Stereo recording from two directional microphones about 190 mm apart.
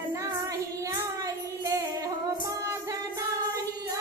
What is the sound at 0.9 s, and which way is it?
Child singing, 15° right (ahead or behind).